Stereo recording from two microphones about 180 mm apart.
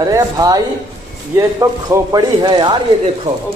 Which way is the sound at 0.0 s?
20° right (ahead or behind).